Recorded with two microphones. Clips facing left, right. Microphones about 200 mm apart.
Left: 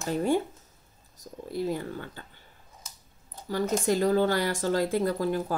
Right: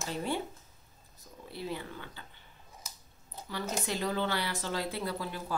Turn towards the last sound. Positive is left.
turn(degrees=45)  # may be behind; listen again after turning